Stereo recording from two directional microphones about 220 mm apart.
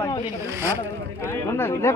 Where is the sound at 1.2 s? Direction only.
10° left (ahead or behind).